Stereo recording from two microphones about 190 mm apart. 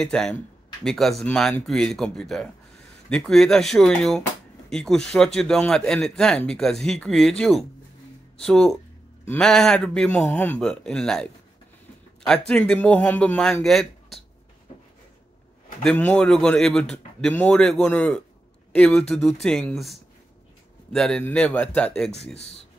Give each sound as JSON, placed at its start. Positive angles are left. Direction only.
{"t": 0.0, "sound": "a man's voice", "side_deg": 5}
{"t": 12.4, "sound": "a man's voice", "side_deg": 5}
{"t": 15.8, "sound": "a man's voice", "side_deg": 5}
{"t": 22.1, "sound": "speech", "side_deg": 35}